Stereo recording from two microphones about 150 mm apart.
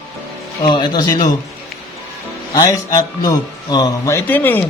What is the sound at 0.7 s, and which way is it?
Speech, 30° left (ahead or behind).